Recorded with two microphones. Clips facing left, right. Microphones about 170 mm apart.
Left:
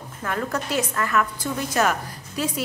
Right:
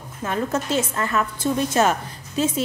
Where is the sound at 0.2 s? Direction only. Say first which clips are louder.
Right 3 dB; 20° right (ahead or behind).